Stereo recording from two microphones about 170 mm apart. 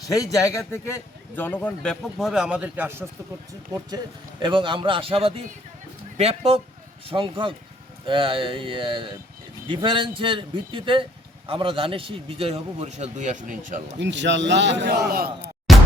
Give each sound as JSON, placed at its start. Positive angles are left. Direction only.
{"t": 0.1, "sound": "a man's voice", "side_deg": 20}
{"t": 3.8, "sound": "a man's voice", "side_deg": -25}
{"t": 14.0, "sound": "a man's voice", "side_deg": -90}
{"t": 15.7, "sound": "whack", "side_deg": 0}